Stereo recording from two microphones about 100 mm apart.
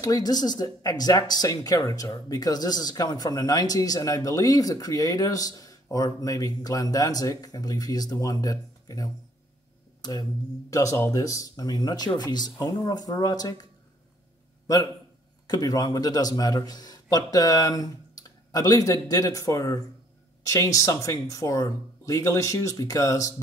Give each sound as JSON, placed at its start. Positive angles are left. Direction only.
{"t": 0.0, "sound": "speech", "side_deg": 40}
{"t": 10.7, "sound": "speech", "side_deg": 35}
{"t": 15.4, "sound": "a man's voice", "side_deg": 40}